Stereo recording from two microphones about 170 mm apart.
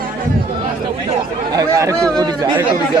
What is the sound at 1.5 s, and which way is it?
Speech, 20° right (ahead or behind).